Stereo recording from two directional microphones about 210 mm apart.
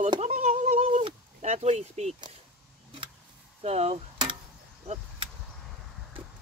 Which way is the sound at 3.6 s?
30° right (ahead or behind).